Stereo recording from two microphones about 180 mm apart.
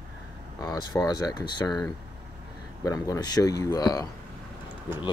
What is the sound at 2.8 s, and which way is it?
Speech, 20° left (ahead or behind).